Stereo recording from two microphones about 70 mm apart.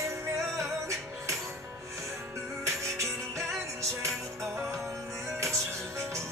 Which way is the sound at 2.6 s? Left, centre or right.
Right.